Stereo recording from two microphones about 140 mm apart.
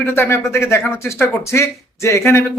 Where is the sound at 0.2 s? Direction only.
20° left (ahead or behind).